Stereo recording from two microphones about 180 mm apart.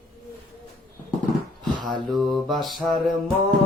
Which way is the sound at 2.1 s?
Centre (ahead or behind).